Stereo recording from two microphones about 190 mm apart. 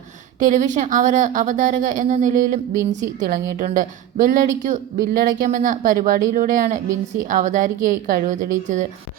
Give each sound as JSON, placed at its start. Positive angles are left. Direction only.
{"t": 0.4, "sound": "speech", "side_deg": -40}